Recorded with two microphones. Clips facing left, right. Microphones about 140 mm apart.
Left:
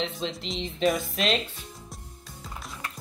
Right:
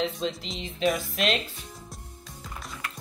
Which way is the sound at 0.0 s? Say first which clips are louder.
Right 2 dB; centre (ahead or behind).